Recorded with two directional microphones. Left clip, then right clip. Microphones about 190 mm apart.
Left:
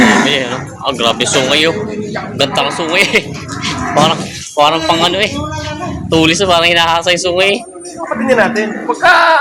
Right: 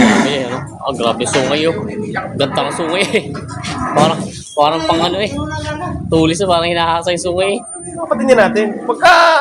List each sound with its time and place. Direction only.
0.3 s speech: 5° right (ahead or behind)
8.3 s a man's voice: 55° right (ahead or behind)